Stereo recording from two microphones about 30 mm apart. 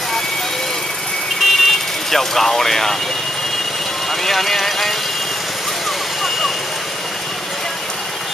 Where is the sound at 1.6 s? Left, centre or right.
Centre.